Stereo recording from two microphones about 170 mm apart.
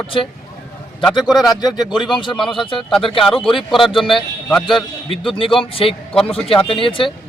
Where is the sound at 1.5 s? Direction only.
25° left (ahead or behind).